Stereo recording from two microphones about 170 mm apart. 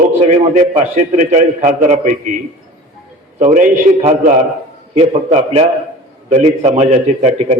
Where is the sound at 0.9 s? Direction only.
45° right (ahead or behind).